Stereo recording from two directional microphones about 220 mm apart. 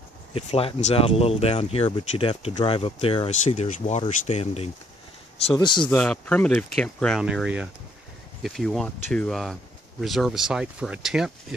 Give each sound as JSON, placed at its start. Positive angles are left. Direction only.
{"t": 0.3, "sound": "speech", "side_deg": 25}
{"t": 5.9, "sound": "speech", "side_deg": 5}